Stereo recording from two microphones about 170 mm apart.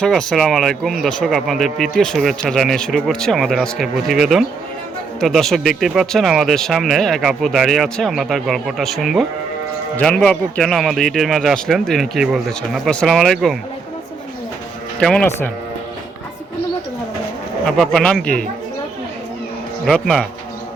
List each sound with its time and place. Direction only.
0.0 s speech: 5° left (ahead or behind)
15.0 s speech: 5° left (ahead or behind)
17.7 s speech: 5° left (ahead or behind)
19.8 s speech: centre (ahead or behind)